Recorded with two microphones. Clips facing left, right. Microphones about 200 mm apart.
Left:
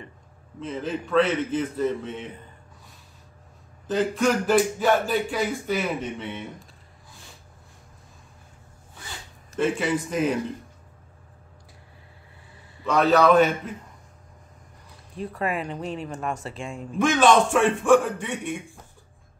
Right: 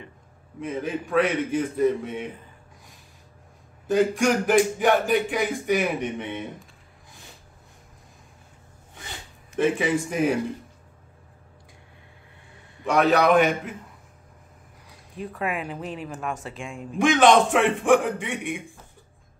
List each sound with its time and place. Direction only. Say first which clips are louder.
0.6 s speech: right 1 dB; 15° right (ahead or behind)
3.8 s speech: right 2 dB; 10° right (ahead or behind)
9.6 s speech: right 2 dB; 15° right (ahead or behind)
12.8 s speech: left 1 dB; 15° right (ahead or behind)
15.1 s speech: left 1 dB; centre (ahead or behind)
17.0 s speech: right 1 dB; 15° right (ahead or behind)